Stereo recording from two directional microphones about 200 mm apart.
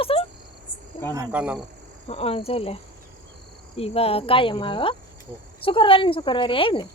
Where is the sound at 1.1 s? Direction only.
10° right (ahead or behind).